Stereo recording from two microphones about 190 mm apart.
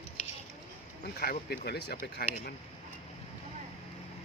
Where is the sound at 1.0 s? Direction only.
55° left (ahead or behind).